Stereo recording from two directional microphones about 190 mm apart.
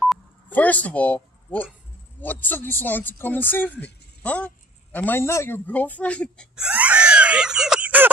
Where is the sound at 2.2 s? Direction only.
10° left (ahead or behind); by 8.1 s 10° right (ahead or behind).